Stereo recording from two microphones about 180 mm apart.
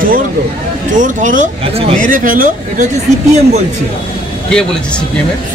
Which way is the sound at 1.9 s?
45° right (ahead or behind).